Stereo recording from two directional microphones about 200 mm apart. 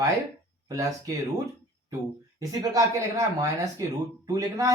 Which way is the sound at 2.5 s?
20° right (ahead or behind).